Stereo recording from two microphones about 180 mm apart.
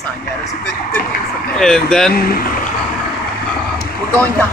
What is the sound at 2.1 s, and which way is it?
Speech, 55° left (ahead or behind).